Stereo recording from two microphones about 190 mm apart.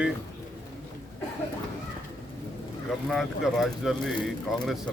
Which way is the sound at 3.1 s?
Centre (ahead or behind).